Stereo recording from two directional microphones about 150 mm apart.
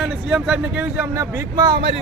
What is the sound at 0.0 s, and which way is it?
Speech, 5° right (ahead or behind).